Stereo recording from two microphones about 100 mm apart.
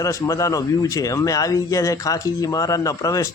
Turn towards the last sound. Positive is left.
turn(degrees=35)  # may be behind; listen again after turning